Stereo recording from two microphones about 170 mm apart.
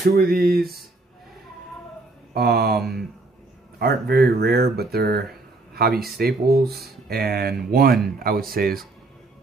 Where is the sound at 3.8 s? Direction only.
70° right (ahead or behind).